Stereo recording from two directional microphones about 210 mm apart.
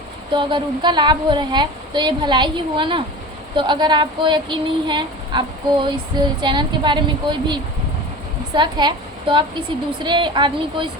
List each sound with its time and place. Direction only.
0.3 s speech: 20° right (ahead or behind)